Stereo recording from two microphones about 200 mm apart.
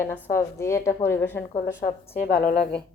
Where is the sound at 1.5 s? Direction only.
45° left (ahead or behind).